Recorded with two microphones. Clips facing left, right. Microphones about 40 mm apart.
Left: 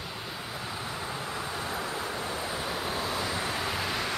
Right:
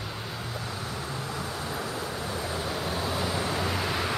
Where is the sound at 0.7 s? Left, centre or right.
Centre.